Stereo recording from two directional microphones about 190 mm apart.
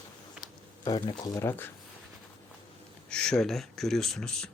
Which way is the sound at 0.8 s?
25° left (ahead or behind).